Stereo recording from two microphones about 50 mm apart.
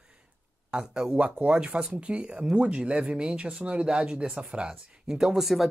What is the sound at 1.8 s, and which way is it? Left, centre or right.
Speech, right.